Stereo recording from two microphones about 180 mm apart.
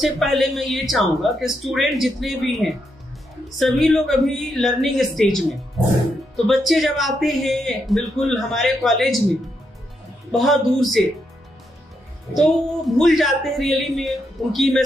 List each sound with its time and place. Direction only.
0.0 s speech: centre (ahead or behind)
10.3 s speech: centre (ahead or behind)
12.4 s speech: centre (ahead or behind)